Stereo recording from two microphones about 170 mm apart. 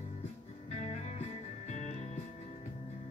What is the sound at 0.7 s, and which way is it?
Music, 40° left (ahead or behind).